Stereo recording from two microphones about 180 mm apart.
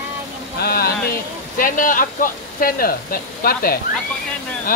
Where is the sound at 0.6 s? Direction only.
60° left (ahead or behind).